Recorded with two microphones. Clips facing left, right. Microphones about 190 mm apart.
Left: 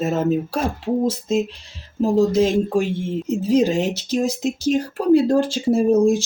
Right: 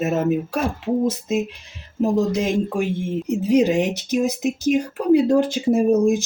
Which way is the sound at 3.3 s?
15° right (ahead or behind).